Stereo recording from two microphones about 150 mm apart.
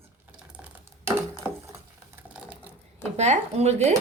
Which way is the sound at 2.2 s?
10° right (ahead or behind).